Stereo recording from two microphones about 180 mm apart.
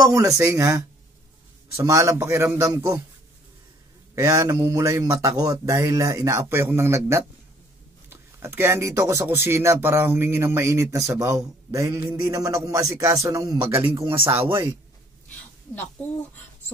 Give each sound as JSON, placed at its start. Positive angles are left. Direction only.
{"t": 0.0, "sound": "speech", "side_deg": -20}
{"t": 4.1, "sound": "speech", "side_deg": -20}
{"t": 15.2, "sound": "a sound", "side_deg": 10}